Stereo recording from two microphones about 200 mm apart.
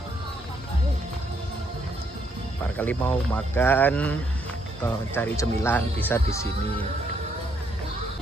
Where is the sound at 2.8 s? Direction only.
10° left (ahead or behind).